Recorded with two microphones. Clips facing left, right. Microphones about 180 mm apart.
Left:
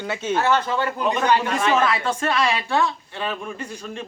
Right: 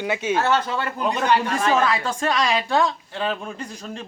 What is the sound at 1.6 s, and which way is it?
Speech, 35° right (ahead or behind).